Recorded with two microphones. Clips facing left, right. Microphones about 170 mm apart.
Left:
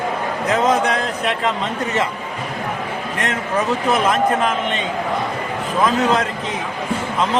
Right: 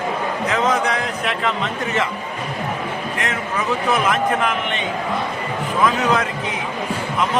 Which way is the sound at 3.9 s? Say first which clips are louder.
Left 2 dB; 35° left (ahead or behind).